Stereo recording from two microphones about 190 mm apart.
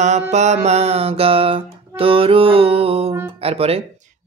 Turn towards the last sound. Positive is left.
turn(degrees=-30)  # may be behind; listen again after turning